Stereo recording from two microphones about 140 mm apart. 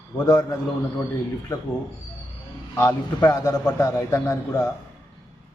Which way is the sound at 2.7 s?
25° left (ahead or behind).